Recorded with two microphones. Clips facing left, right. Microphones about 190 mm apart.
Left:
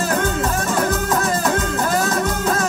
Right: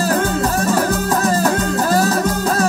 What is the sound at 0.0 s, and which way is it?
Music, 35° right (ahead or behind).